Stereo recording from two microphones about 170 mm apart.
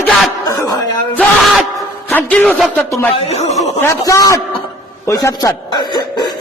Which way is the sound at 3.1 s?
40° left (ahead or behind).